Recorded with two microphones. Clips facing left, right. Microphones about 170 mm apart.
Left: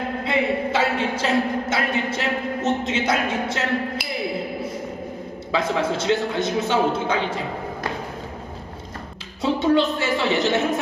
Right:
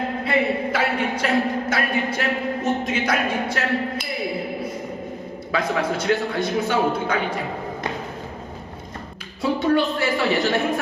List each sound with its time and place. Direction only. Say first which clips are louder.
0.3 s a man's voice: even; 25° left (ahead or behind)
5.5 s a man's voice: left 1 dB; 25° left (ahead or behind)
9.4 s a man's voice: left 1 dB; 20° left (ahead or behind)